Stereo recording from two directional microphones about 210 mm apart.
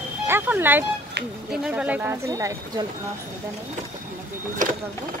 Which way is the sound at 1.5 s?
5° right (ahead or behind).